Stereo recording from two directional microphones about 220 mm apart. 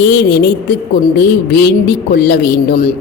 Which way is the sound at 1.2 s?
50° left (ahead or behind).